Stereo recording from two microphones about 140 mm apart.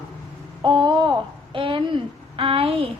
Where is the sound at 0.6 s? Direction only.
35° right (ahead or behind).